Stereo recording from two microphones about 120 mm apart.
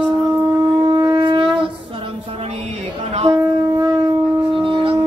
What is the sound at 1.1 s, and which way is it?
Shofar, 45° right (ahead or behind).